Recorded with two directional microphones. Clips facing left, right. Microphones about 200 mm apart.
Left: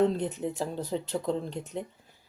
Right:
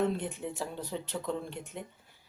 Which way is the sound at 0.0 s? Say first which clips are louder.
Left 5 dB; 35° left (ahead or behind).